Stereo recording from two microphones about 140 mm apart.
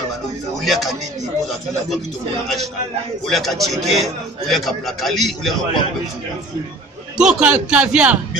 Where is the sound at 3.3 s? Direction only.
Centre (ahead or behind).